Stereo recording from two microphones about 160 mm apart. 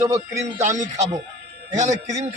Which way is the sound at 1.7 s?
45° right (ahead or behind).